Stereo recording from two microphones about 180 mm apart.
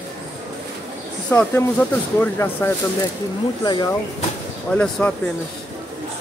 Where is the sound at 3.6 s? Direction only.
20° left (ahead or behind).